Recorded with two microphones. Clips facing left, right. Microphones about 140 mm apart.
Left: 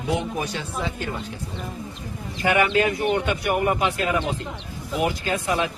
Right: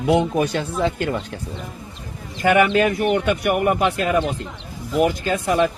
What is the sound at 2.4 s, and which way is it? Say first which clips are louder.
A man's voice: right 4 dB; 55° right (ahead or behind).